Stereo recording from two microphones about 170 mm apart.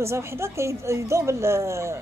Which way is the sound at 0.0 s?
15° right (ahead or behind).